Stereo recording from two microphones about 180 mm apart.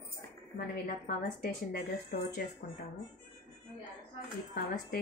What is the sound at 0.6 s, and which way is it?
A woman's voice, 55° left (ahead or behind).